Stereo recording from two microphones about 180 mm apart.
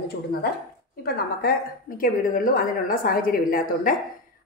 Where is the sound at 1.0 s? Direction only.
55° left (ahead or behind).